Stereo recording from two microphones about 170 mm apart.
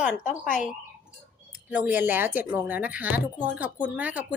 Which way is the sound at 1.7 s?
10° right (ahead or behind).